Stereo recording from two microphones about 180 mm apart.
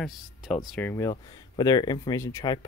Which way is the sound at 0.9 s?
20° left (ahead or behind).